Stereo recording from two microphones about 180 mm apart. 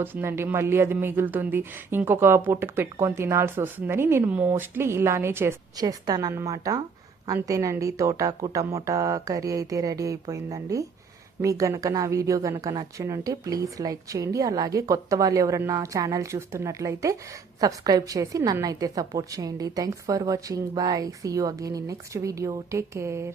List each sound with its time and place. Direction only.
0.0 s a woman's voice: 10° right (ahead or behind)